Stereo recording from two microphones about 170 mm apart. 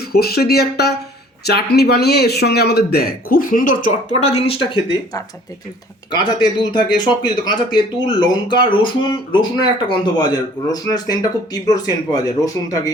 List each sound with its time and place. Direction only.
0.0 s speech: 65° left (ahead or behind); by 12.9 s 20° left (ahead or behind)